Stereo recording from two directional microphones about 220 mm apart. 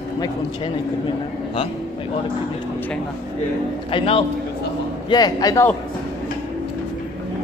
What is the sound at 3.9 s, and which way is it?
A man's voice, 25° left (ahead or behind).